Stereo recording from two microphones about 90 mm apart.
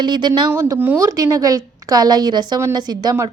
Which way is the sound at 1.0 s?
40° right (ahead or behind).